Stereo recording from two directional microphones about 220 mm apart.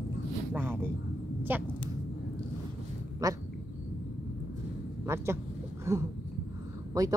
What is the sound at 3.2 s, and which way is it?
Speech, 15° right (ahead or behind).